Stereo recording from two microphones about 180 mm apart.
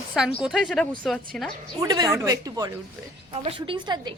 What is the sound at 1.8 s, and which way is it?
Speech, 25° right (ahead or behind).